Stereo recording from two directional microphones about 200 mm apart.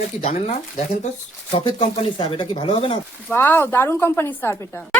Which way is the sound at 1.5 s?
25° left (ahead or behind).